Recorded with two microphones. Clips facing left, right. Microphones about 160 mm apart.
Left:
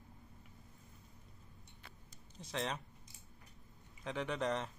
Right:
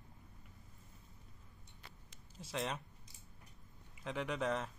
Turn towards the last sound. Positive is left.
turn(degrees=-5)  # may be behind; listen again after turning